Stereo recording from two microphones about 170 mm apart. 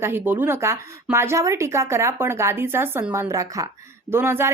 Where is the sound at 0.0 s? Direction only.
10° right (ahead or behind).